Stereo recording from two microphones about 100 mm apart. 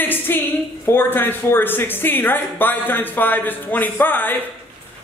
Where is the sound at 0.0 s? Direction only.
20° left (ahead or behind).